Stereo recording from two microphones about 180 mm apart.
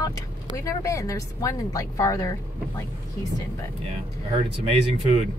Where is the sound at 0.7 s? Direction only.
15° left (ahead or behind).